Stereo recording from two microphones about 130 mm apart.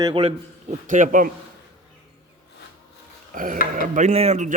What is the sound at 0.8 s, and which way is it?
Speech, 85° right.